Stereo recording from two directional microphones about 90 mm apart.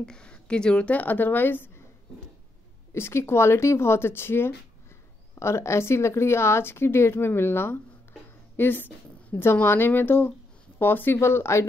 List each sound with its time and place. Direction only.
0.0 s speech: 10° left (ahead or behind)
2.9 s speech: 30° left (ahead or behind)